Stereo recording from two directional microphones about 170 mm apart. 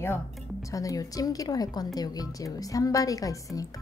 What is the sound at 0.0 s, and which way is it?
A woman's voice, 15° left (ahead or behind).